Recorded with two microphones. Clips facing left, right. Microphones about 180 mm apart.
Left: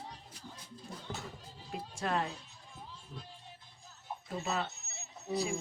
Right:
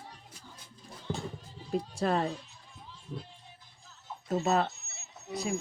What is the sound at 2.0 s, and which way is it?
Speech, 35° right (ahead or behind).